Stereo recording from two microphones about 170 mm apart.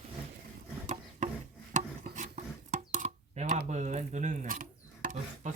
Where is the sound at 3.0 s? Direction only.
50° right (ahead or behind).